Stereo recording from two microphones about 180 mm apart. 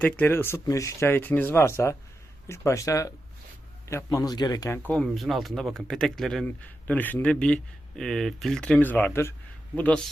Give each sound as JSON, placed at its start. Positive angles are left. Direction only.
{"t": 0.0, "sound": "a man's voice", "side_deg": 10}
{"t": 4.9, "sound": "speech", "side_deg": 5}